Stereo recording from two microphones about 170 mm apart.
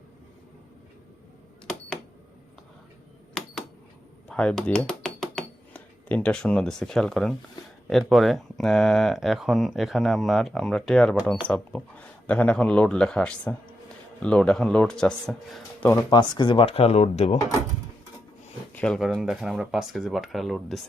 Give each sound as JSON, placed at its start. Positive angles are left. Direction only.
{"t": 4.3, "sound": "computer keyboard", "side_deg": 5}
{"t": 7.9, "sound": "speech", "side_deg": 0}
{"t": 16.1, "sound": "speech", "side_deg": 25}
{"t": 18.7, "sound": "speech", "side_deg": 5}